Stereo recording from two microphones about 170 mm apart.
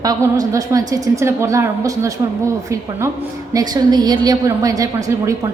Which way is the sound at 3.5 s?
25° right (ahead or behind).